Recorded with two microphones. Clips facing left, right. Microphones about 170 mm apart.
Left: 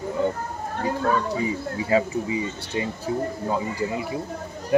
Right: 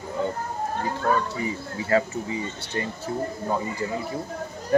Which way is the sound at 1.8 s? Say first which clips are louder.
Left 1 dB; 10° left (ahead or behind).